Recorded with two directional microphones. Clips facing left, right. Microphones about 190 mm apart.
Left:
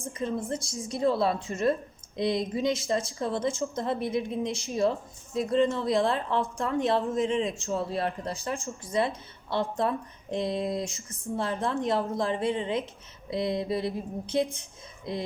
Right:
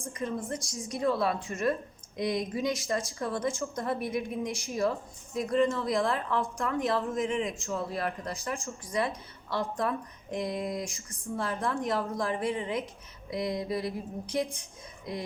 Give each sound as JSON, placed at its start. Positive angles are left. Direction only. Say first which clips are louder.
{"t": 0.1, "sound": "speech", "louder": "left 3 dB", "side_deg": 25}